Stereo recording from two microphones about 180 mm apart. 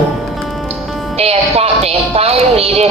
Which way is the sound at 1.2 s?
35° right (ahead or behind).